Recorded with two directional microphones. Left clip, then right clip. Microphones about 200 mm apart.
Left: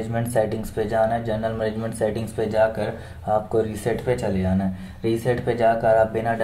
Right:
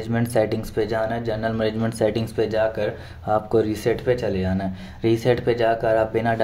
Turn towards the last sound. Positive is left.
turn(degrees=-20)  # may be behind; listen again after turning